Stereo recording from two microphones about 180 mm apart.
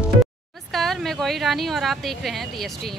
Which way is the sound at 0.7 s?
Centre (ahead or behind).